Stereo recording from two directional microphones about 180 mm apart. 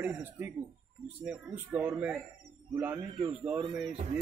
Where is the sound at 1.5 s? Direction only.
10° right (ahead or behind).